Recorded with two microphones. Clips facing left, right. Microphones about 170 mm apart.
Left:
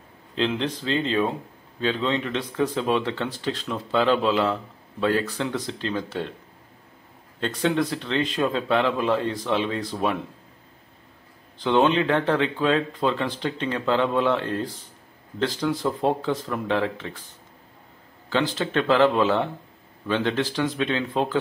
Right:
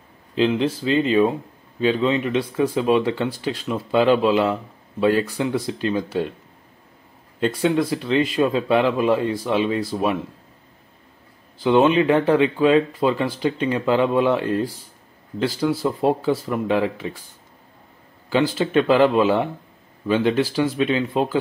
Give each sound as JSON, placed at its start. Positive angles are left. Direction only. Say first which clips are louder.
{"t": 0.4, "sound": "speech", "louder": "right 6 dB", "side_deg": -5}
{"t": 7.3, "sound": "speech", "louder": "right 4 dB", "side_deg": -10}
{"t": 11.5, "sound": "speech", "louder": "right 4 dB", "side_deg": -5}
{"t": 18.3, "sound": "speech", "louder": "right 5 dB", "side_deg": -10}